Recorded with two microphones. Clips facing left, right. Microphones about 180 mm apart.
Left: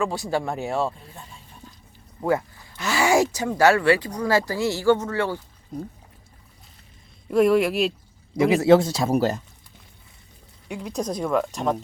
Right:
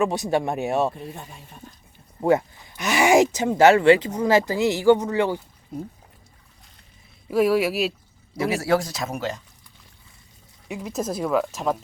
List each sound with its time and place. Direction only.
0.0 s speech: 20° right (ahead or behind)
2.2 s speech: 20° right (ahead or behind)
7.3 s speech: 5° right (ahead or behind)
8.4 s speech: 20° left (ahead or behind); by 9.4 s 35° left (ahead or behind)
10.7 s speech: 5° right (ahead or behind)